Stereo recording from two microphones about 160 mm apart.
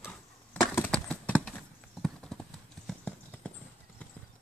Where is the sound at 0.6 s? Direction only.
15° left (ahead or behind).